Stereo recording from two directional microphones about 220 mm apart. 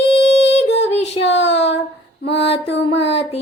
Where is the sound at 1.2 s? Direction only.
55° left (ahead or behind).